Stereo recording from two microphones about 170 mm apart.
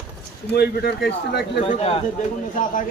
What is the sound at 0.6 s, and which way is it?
Speech, 75° left (ahead or behind).